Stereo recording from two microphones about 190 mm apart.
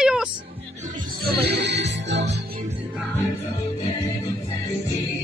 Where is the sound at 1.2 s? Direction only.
55° right (ahead or behind).